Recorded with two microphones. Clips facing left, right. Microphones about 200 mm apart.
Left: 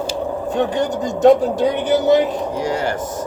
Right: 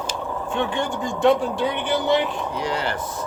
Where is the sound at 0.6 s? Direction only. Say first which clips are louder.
Left 5 dB; 40° left (ahead or behind).